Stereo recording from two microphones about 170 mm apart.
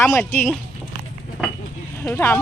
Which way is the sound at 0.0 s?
10° left (ahead or behind).